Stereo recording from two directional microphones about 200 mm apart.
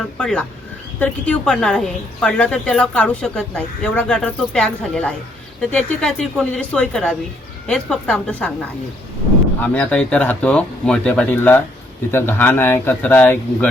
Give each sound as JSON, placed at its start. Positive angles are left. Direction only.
{"t": 0.2, "sound": "a woman's voice", "side_deg": 5}
{"t": 9.6, "sound": "a woman's voice", "side_deg": 5}